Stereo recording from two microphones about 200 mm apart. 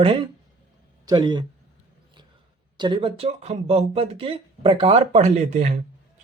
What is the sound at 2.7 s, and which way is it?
Speech, 20° right (ahead or behind).